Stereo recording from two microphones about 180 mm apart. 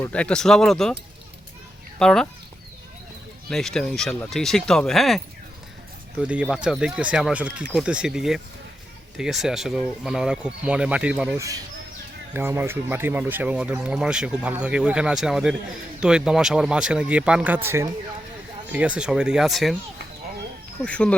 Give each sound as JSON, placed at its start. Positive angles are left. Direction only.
{"t": 0.0, "sound": "speech", "side_deg": 5}
{"t": 2.0, "sound": "speech", "side_deg": 5}
{"t": 3.5, "sound": "speech", "side_deg": 0}
{"t": 11.3, "sound": "speech", "side_deg": -20}
{"t": 20.8, "sound": "speech", "side_deg": 5}